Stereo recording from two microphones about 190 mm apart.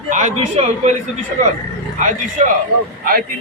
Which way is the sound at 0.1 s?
40° right (ahead or behind).